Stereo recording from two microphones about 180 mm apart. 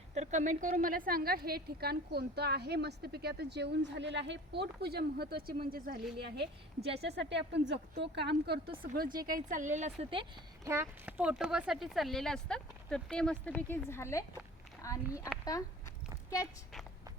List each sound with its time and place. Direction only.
0.1 s a woman's voice: 40° right (ahead or behind); by 8.7 s 65° right (ahead or behind)
9.1 s a woman's voice: 50° right (ahead or behind); by 10.2 s 30° right (ahead or behind)
10.7 s speech: 10° right (ahead or behind); by 15.7 s 20° left (ahead or behind)